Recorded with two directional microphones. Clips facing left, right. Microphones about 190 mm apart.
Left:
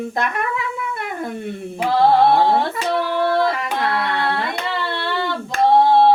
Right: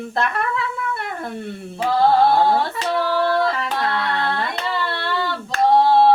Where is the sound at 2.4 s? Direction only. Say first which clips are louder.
Left 1 dB; 20° left (ahead or behind).